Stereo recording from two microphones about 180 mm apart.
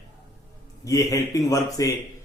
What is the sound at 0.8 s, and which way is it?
Speech, 20° left (ahead or behind).